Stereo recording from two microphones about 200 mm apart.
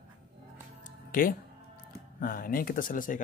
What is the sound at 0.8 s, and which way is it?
Music, 45° left (ahead or behind).